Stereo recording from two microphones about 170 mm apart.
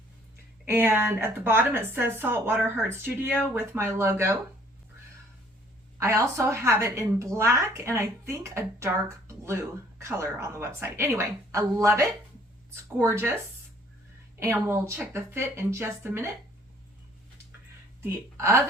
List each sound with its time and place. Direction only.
0.6 s a woman's voice: 10° right (ahead or behind)
6.0 s a woman's voice: 15° right (ahead or behind)
14.3 s a woman's voice: 15° right (ahead or behind)
18.0 s speech: 15° right (ahead or behind)